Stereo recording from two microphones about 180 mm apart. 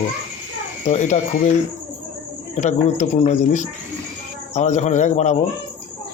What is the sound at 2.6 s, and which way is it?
Speech, 40° left (ahead or behind).